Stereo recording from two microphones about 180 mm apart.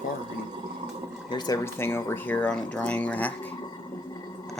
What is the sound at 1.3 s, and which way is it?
Speech, 20° left (ahead or behind).